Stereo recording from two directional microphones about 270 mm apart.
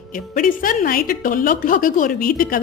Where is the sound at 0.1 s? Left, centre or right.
Left.